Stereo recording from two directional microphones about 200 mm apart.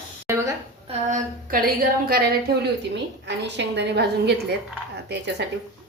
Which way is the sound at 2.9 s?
60° right (ahead or behind).